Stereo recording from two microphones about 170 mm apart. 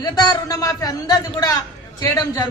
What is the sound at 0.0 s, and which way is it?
A man's voice, 25° left (ahead or behind).